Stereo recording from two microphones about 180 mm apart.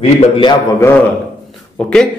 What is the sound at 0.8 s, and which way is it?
A man's voice, 15° left (ahead or behind).